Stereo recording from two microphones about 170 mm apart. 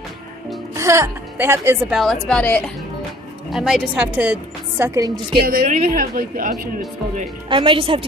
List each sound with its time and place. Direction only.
0.7 s a woman's voice: 15° right (ahead or behind)
2.2 s a woman's voice: 5° left (ahead or behind); by 5.1 s 15° right (ahead or behind)
5.4 s a man's voice: 60° right (ahead or behind)
7.4 s speech: 30° right (ahead or behind)